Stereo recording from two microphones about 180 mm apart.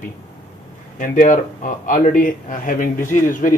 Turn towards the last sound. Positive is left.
turn(degrees=50)  # may be behind; listen again after turning